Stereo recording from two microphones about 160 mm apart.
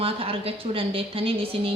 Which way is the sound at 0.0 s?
35° right (ahead or behind).